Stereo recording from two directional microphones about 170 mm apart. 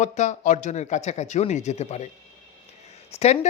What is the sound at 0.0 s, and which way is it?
Speech, 45° left (ahead or behind).